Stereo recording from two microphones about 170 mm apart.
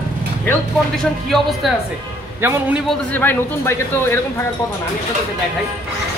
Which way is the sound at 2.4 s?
10° right (ahead or behind).